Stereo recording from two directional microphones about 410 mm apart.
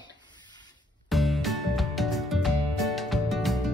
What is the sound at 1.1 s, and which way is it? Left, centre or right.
Music, centre.